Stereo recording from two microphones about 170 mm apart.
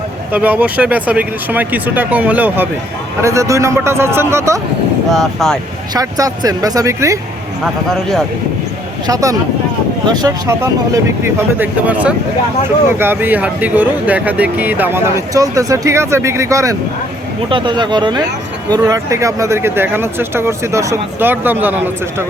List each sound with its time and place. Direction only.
0.3 s speech: 10° right (ahead or behind)
5.1 s speech: centre (ahead or behind)
5.9 s speech: 20° right (ahead or behind)
9.0 s speech: 20° right (ahead or behind)